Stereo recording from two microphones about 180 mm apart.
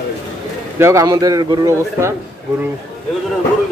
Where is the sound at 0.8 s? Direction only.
15° right (ahead or behind).